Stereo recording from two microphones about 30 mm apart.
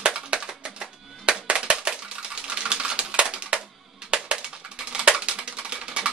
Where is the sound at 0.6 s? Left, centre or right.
Right.